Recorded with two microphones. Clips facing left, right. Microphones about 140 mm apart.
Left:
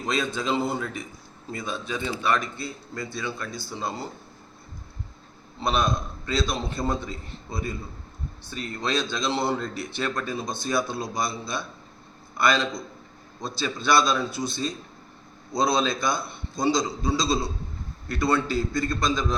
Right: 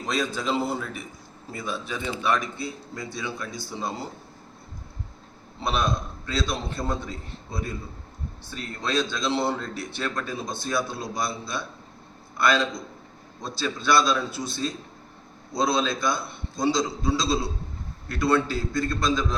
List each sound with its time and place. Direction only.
0.2 s speech: 5° right (ahead or behind)
2.3 s a man's voice: 15° right (ahead or behind)
5.6 s speech: 5° right (ahead or behind)